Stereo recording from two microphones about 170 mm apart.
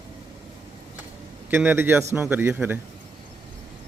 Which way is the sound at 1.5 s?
10° right (ahead or behind).